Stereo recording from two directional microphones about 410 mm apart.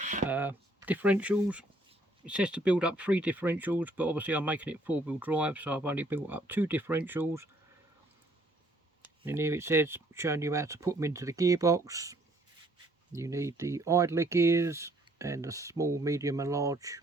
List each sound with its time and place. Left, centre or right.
0.0 s a sound: centre
0.3 s speech: centre
9.2 s speech: centre